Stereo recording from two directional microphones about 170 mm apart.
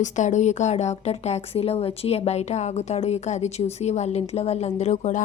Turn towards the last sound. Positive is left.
turn(degrees=40)  # may be behind; listen again after turning